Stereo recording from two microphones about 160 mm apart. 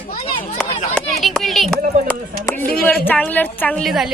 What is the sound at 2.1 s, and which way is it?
Speech, 10° left (ahead or behind).